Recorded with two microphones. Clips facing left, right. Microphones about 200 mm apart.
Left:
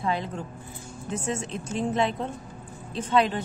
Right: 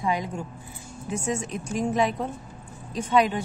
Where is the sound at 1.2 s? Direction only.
25° left (ahead or behind).